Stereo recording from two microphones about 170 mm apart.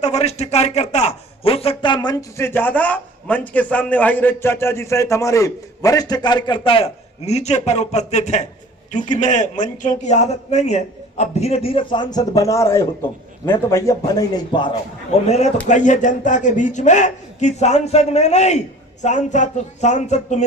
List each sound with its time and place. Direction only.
0.0 s a man's voice: 40° left (ahead or behind); by 2.5 s 25° left (ahead or behind)
2.5 s a man's voice: 10° left (ahead or behind); by 14.8 s 25° left (ahead or behind)
15.3 s a man's voice: 40° left (ahead or behind)